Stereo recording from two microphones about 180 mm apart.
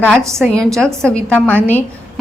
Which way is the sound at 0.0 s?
5° left (ahead or behind).